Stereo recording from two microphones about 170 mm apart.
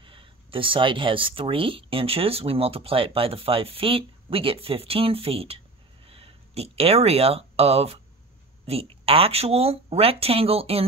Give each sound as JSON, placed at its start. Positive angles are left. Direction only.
{"t": 0.0, "sound": "speech", "side_deg": -30}